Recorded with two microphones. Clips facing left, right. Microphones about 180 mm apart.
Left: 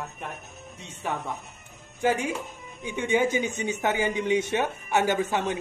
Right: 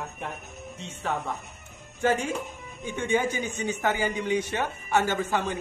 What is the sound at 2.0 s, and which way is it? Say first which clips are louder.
A man's voice: even; 15° left (ahead or behind).